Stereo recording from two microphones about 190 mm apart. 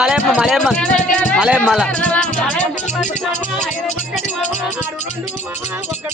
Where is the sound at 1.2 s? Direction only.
5° left (ahead or behind).